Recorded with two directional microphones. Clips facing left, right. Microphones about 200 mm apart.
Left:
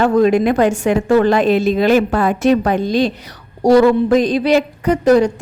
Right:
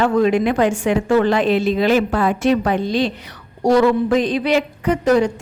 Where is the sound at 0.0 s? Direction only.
40° left (ahead or behind).